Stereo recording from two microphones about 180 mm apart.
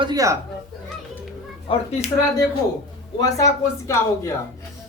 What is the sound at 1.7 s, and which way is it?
Speech, 35° left (ahead or behind).